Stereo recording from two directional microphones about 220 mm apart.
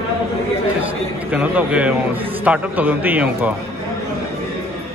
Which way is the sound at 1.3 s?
5° right (ahead or behind).